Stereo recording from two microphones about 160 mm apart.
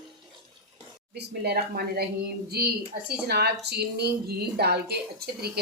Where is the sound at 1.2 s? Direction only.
85° right.